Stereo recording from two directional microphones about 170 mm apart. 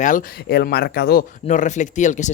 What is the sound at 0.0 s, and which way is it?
Speech, 50° left (ahead or behind).